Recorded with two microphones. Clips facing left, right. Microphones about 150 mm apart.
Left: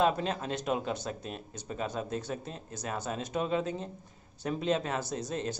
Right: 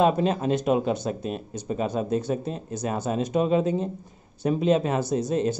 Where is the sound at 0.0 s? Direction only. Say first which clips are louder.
Right 7 dB; 15° right (ahead or behind).